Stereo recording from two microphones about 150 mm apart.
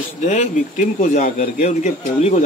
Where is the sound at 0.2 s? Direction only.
50° left (ahead or behind).